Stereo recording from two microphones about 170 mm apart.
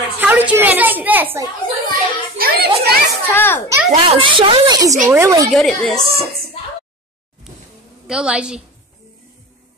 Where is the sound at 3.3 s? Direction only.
10° left (ahead or behind).